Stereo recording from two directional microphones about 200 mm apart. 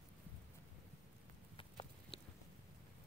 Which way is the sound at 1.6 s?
25° left (ahead or behind).